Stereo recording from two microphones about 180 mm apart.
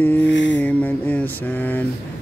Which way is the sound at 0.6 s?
10° left (ahead or behind).